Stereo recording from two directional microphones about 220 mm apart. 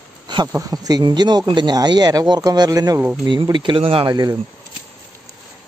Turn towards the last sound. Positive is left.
turn(degrees=-20)  # may be behind; listen again after turning